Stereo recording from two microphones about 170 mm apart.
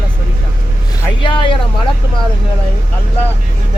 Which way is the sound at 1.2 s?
30° left (ahead or behind).